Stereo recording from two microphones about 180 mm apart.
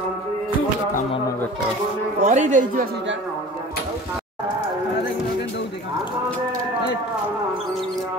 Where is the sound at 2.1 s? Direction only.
40° right (ahead or behind).